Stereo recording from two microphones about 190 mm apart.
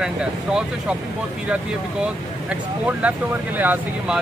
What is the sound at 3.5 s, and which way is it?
Speech, 10° right (ahead or behind).